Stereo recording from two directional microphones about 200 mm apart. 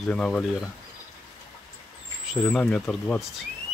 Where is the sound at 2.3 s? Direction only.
5° left (ahead or behind).